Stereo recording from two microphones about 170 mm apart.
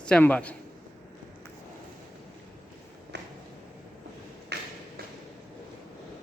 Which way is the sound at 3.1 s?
90° right.